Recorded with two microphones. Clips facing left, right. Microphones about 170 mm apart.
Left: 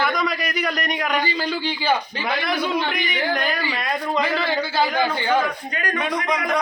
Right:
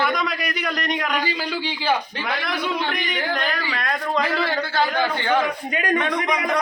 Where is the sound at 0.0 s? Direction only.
Centre (ahead or behind).